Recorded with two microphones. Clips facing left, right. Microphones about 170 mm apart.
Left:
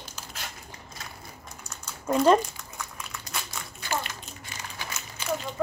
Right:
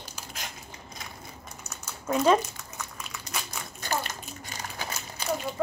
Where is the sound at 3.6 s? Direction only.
10° right (ahead or behind).